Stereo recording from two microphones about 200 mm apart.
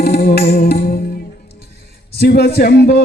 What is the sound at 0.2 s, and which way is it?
Music, 50° left (ahead or behind).